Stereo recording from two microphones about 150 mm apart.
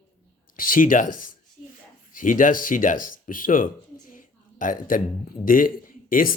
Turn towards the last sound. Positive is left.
turn(degrees=70)  # may be behind; listen again after turning